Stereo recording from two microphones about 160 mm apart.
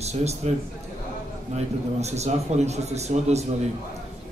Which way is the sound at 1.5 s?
45° right (ahead or behind).